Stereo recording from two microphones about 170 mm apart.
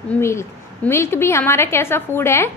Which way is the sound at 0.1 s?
15° left (ahead or behind).